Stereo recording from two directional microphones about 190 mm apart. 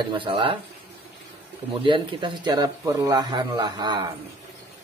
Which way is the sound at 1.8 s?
25° right (ahead or behind).